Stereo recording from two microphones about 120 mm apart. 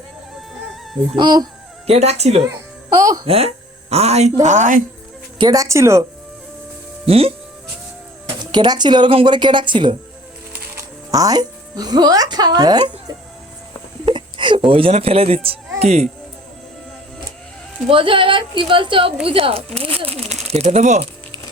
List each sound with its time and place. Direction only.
1.1 s speech: 35° right (ahead or behind)
1.9 s speech: 65° right (ahead or behind)
4.4 s a woman's voice: 90° right
5.4 s speech: 30° right (ahead or behind)
7.1 s speech: 55° right (ahead or behind)
8.4 s speech: 35° right (ahead or behind)
11.1 s speech: 30° right (ahead or behind)
14.0 s wail: 40° right (ahead or behind)
14.7 s speech: 50° right (ahead or behind)
17.8 s speech: 45° right (ahead or behind); by 21.1 s 65° right (ahead or behind)